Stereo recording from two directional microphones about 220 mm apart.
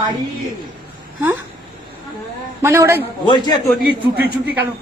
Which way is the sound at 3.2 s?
20° left (ahead or behind).